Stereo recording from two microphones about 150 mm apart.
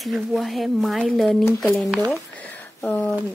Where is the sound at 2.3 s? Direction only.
10° left (ahead or behind).